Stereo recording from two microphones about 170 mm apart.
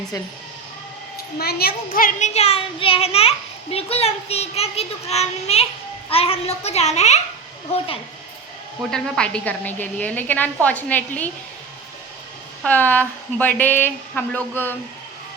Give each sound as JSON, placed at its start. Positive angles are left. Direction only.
{"t": 1.4, "sound": "a child's voice", "side_deg": 65}
{"t": 8.9, "sound": "a woman's voice", "side_deg": 5}
{"t": 12.6, "sound": "a woman's voice", "side_deg": 10}